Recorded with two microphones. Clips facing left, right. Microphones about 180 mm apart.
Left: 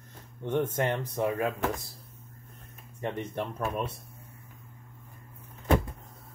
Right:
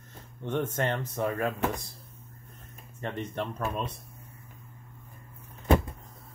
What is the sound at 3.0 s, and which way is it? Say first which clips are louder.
Speech: left 1 dB; 15° left (ahead or behind).